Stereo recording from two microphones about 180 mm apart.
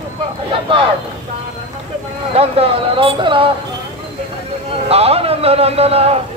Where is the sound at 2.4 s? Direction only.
35° right (ahead or behind).